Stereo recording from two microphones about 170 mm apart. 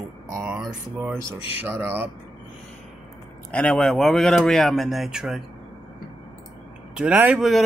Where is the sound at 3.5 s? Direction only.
5° left (ahead or behind).